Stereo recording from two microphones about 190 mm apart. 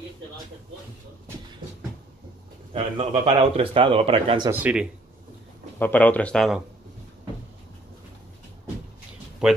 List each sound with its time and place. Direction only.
3.0 s speech: 30° right (ahead or behind)
4.5 s speech: 10° right (ahead or behind)
5.8 s speech: 10° left (ahead or behind)
9.4 s speech: 5° right (ahead or behind)